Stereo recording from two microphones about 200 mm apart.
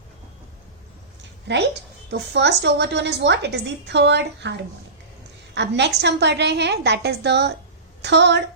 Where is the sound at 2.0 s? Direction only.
60° right (ahead or behind).